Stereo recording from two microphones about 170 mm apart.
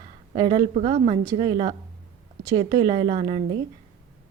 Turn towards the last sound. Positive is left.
turn(degrees=-30)  # may be behind; listen again after turning